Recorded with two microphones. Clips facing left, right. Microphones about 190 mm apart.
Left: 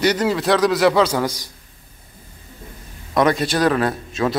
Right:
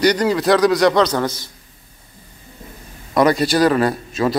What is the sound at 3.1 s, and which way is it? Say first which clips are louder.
A man's voice: right 3 dB; centre (ahead or behind).